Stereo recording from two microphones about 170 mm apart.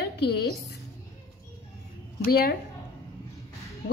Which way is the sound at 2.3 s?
65° left (ahead or behind).